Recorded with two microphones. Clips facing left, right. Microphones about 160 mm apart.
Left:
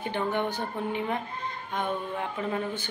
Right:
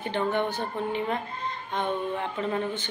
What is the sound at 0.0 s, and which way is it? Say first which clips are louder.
A woman's voice: right 2 dB; 15° left (ahead or behind).